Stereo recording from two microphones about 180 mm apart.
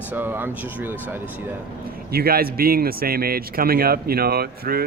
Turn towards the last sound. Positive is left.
turn(degrees=-60)  # may be behind; listen again after turning